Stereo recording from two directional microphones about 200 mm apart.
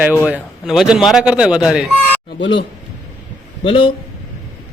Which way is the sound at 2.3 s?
60° left (ahead or behind).